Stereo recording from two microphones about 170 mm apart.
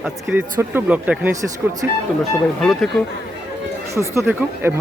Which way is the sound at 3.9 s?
15° right (ahead or behind).